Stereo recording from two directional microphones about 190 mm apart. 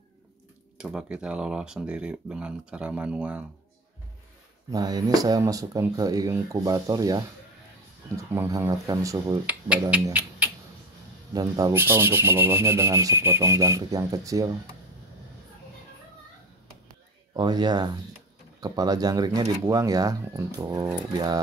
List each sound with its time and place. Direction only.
0.7 s speech: 5° right (ahead or behind)
4.6 s speech: 20° right (ahead or behind)
8.2 s rub: 15° right (ahead or behind)
9.7 s rub: 5° right (ahead or behind)
10.0 s speech: 10° right (ahead or behind)
11.3 s rub: 20° right (ahead or behind)
17.3 s speech: 20° right (ahead or behind)